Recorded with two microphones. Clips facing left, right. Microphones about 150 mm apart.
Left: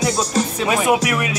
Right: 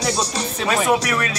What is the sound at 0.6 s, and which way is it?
Music, 10° left (ahead or behind).